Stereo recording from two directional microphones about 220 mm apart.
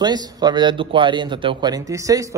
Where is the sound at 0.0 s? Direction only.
20° right (ahead or behind).